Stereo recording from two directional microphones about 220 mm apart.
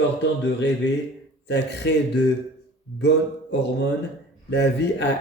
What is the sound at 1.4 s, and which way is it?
Speech, 50° left (ahead or behind).